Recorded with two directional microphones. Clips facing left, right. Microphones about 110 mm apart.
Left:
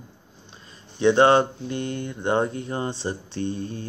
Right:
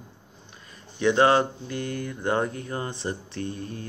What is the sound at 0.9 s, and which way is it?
Mantra, 25° left (ahead or behind).